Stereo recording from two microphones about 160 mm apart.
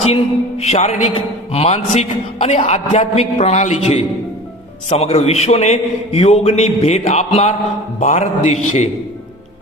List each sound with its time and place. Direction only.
0.6 s a man's voice: 40° left (ahead or behind)